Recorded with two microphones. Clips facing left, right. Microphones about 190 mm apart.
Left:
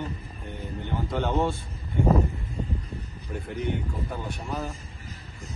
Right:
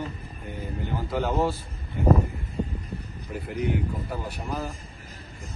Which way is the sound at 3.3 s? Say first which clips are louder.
Right 2 dB; 5° right (ahead or behind).